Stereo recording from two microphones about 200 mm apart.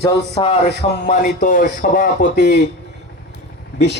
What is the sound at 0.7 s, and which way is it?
Speech, 55° left (ahead or behind).